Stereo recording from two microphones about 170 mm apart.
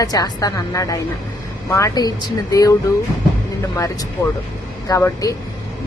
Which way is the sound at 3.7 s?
20° left (ahead or behind).